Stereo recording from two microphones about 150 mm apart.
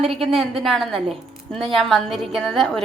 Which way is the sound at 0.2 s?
Centre (ahead or behind).